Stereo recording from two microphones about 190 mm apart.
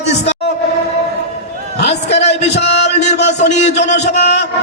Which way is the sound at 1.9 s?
35° left (ahead or behind).